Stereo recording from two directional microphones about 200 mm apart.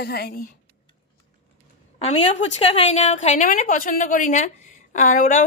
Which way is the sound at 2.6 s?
30° left (ahead or behind).